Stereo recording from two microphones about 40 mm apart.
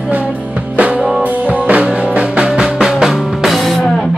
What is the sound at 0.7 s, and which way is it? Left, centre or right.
Music, right.